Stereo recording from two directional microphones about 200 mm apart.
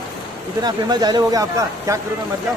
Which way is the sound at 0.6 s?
20° right (ahead or behind).